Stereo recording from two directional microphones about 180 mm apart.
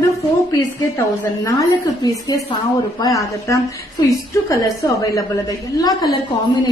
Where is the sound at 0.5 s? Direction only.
20° left (ahead or behind).